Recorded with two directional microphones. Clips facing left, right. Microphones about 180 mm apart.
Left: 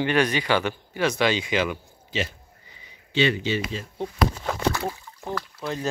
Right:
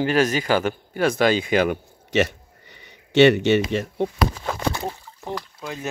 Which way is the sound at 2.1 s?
70° right (ahead or behind).